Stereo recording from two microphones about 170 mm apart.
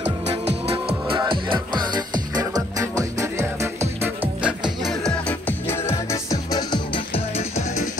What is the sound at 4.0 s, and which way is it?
Music, 5° right (ahead or behind).